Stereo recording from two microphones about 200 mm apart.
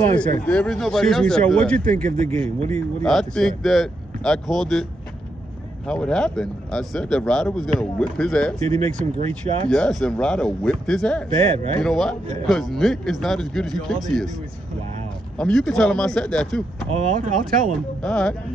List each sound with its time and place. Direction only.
0.1 s speech: 5° left (ahead or behind)
5.9 s speech: 5° left (ahead or behind)
8.6 s speech: 30° right (ahead or behind)
9.7 s speech: centre (ahead or behind)
11.3 s speech: 30° right (ahead or behind)
11.8 s speech: centre (ahead or behind)
15.3 s speech: 5° left (ahead or behind)
16.9 s speech: 45° right (ahead or behind)
18.0 s speech: 5° left (ahead or behind)